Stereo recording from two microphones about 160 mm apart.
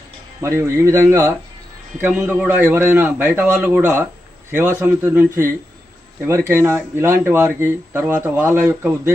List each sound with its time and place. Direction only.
0.4 s speech: 15° right (ahead or behind)